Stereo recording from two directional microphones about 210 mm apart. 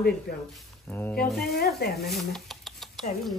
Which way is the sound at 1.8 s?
50° left (ahead or behind).